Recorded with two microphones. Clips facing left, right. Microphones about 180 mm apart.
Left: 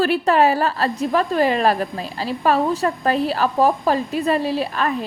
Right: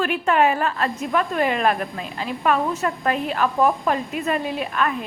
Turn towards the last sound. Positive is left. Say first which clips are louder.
# left 3 dB
turn(degrees=35)  # may be behind; listen again after turning